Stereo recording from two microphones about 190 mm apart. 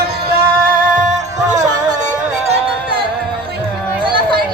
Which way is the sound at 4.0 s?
25° right (ahead or behind).